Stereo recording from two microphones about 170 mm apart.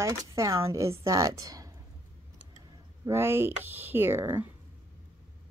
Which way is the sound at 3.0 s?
15° right (ahead or behind).